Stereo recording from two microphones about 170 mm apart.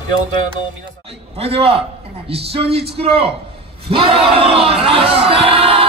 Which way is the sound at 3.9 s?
30° right (ahead or behind).